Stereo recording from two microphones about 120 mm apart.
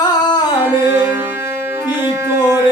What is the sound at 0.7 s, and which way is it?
Music, 15° right (ahead or behind).